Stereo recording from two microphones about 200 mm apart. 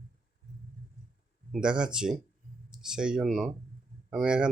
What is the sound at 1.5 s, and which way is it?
Speech, 5° right (ahead or behind).